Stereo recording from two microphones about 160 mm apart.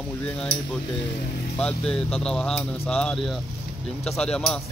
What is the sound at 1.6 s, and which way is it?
Speech, 5° left (ahead or behind).